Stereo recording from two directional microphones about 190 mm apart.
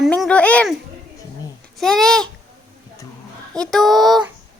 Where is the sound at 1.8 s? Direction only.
Centre (ahead or behind).